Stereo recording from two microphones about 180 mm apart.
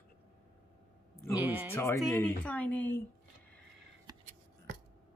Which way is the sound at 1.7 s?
15° left (ahead or behind).